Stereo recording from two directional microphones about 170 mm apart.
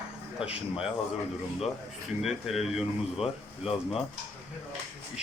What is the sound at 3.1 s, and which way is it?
Speech, 35° left (ahead or behind).